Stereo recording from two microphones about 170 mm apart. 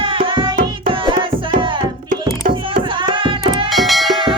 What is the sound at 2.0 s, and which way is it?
Music, 50° right (ahead or behind).